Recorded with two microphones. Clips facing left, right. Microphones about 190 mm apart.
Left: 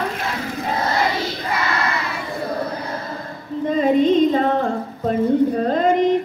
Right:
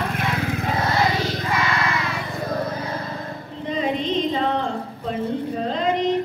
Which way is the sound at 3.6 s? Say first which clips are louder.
Left 8 dB; 50° left (ahead or behind).